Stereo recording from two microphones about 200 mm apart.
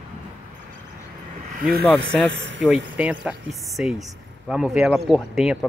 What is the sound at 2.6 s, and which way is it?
Speech, 5° right (ahead or behind).